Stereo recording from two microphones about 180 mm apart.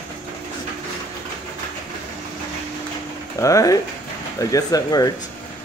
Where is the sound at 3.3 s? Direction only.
20° left (ahead or behind).